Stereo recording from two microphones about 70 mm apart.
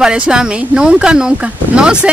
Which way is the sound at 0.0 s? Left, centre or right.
Centre.